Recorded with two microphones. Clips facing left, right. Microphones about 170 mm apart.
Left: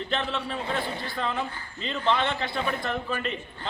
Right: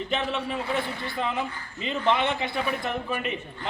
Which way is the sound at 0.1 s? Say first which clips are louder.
Right 2 dB; 15° right (ahead or behind).